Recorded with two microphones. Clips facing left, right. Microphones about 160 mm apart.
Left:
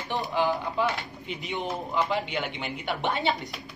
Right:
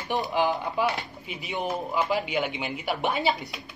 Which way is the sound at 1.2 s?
5° right (ahead or behind).